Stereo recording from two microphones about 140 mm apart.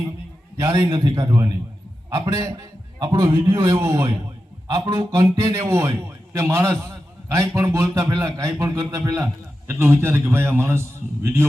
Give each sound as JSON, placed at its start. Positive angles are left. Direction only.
{"t": 0.6, "sound": "a man's voice", "side_deg": -20}
{"t": 0.9, "sound": "a man's voice", "side_deg": -30}